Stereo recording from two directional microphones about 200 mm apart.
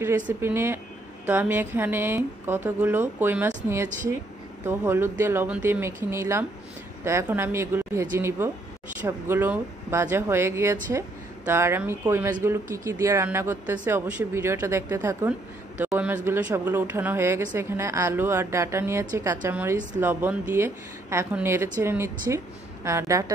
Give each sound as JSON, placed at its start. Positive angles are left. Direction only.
{"t": 0.0, "sound": "speech", "side_deg": -10}